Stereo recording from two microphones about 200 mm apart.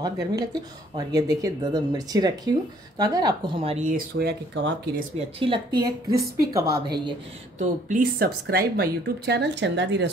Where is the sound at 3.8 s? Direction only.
45° right (ahead or behind).